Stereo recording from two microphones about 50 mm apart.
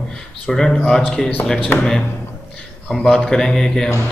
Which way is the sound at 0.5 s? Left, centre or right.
Centre.